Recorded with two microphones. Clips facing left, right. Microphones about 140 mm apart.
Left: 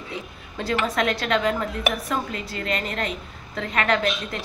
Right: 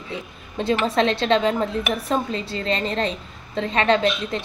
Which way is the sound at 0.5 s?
25° right (ahead or behind).